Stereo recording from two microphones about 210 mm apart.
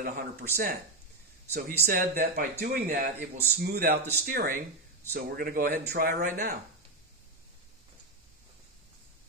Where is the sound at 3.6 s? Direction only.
45° right (ahead or behind).